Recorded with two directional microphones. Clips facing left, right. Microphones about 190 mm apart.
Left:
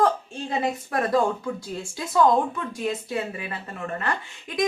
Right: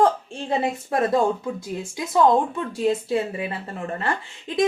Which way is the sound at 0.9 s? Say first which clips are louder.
Right 3 dB; 25° right (ahead or behind).